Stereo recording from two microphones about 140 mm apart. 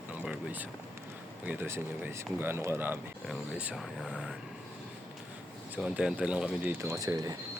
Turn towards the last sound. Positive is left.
turn(degrees=-25)  # may be behind; listen again after turning